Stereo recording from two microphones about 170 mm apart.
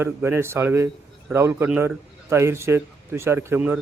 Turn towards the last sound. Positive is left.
turn(degrees=-15)  # may be behind; listen again after turning